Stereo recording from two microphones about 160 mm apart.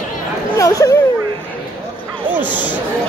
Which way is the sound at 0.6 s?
20° left (ahead or behind).